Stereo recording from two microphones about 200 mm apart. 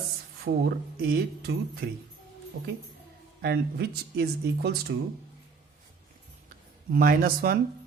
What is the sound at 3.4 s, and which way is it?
Speech, 50° right (ahead or behind).